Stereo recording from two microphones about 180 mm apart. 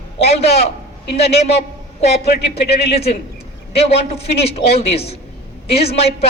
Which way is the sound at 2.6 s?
35° left (ahead or behind).